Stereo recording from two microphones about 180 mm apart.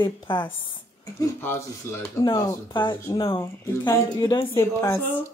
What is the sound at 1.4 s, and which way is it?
Speech, 15° left (ahead or behind).